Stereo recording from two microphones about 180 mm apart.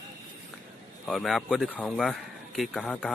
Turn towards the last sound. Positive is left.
turn(degrees=5)  # may be behind; listen again after turning